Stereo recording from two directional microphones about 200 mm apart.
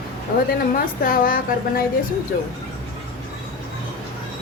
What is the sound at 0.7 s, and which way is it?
A woman's voice, 45° left (ahead or behind).